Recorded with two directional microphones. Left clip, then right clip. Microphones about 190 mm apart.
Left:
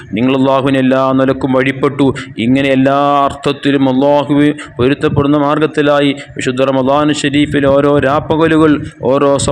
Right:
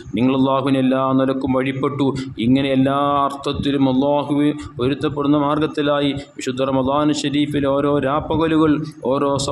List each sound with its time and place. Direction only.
0.1 s speech: 20° left (ahead or behind)